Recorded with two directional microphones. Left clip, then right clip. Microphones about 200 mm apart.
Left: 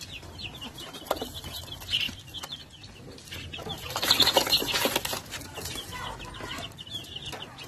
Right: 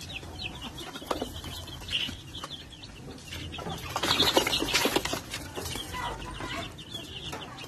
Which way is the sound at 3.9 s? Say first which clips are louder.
Left 2 dB; 45° left (ahead or behind).